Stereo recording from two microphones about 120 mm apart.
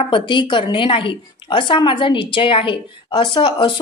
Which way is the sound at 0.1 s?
40° left (ahead or behind).